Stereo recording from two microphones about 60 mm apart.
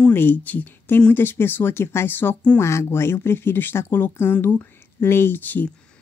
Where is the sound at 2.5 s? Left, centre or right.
Left.